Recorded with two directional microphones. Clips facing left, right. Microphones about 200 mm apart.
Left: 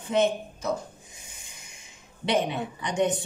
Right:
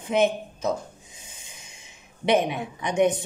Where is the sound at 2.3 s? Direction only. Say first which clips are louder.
Right 4 dB; 15° right (ahead or behind).